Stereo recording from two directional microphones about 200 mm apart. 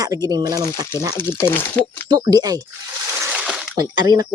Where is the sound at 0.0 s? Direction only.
15° right (ahead or behind).